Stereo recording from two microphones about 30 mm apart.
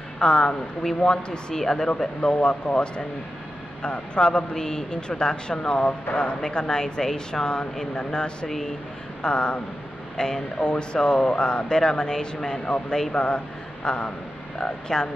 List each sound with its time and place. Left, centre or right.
0.2 s speech: left
2.3 s speech: left
5.2 s speech: left
6.4 s speech: left
8.5 s speech: centre
9.2 s speech: left